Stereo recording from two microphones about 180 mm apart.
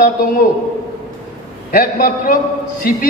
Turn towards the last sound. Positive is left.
turn(degrees=50)  # may be behind; listen again after turning